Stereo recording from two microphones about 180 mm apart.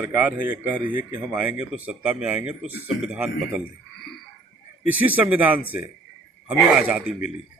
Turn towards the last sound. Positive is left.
turn(degrees=-5)  # may be behind; listen again after turning